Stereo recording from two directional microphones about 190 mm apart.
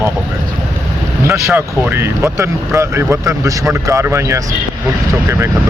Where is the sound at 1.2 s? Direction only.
15° right (ahead or behind).